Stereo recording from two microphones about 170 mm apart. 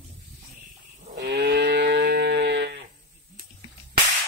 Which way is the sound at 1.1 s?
65° right (ahead or behind).